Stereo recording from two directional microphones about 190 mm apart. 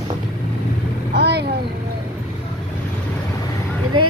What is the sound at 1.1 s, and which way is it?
Speech, 60° right (ahead or behind).